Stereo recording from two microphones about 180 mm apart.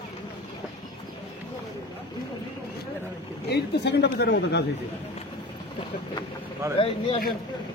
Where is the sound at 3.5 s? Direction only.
70° left (ahead or behind).